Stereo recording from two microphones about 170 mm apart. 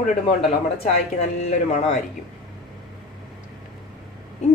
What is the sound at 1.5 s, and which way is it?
Speech, 45° left (ahead or behind).